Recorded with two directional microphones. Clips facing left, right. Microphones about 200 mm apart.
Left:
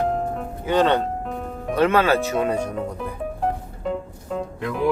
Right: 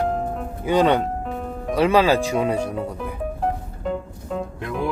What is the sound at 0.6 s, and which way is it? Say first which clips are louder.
Speech: right 1 dB; 10° right (ahead or behind).